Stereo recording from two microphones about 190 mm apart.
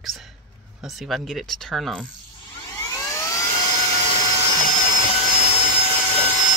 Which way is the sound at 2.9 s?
15° left (ahead or behind).